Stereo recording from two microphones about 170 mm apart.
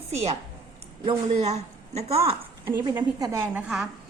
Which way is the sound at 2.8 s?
25° right (ahead or behind).